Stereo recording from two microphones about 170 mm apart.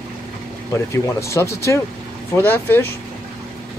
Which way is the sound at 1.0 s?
15° left (ahead or behind).